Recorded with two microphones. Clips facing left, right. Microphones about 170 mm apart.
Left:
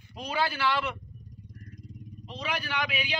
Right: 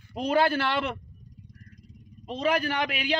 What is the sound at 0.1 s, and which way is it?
Speech, 55° right (ahead or behind).